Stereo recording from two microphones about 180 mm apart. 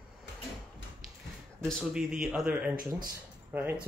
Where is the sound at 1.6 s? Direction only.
Centre (ahead or behind).